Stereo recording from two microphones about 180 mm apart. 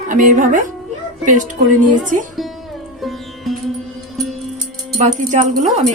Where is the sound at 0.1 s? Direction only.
45° right (ahead or behind).